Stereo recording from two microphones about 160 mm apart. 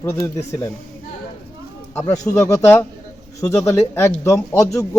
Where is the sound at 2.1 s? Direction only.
20° left (ahead or behind).